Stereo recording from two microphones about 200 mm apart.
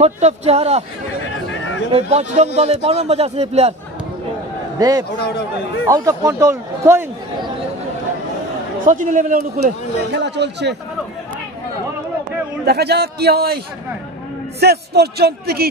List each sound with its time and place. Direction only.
0.0 s a man's voice: 30° right (ahead or behind)
1.9 s a man's voice: 30° right (ahead or behind)
4.7 s a man's voice: 20° right (ahead or behind)
8.8 s a man's voice: 40° right (ahead or behind)
10.1 s a man's voice: 60° right (ahead or behind)
12.6 s a man's voice: 55° right (ahead or behind)
14.6 s a man's voice: 50° right (ahead or behind)